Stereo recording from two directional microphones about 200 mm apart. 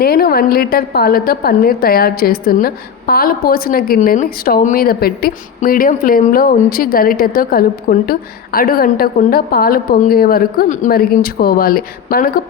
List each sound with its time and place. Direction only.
0.0 s a woman's voice: 50° left (ahead or behind)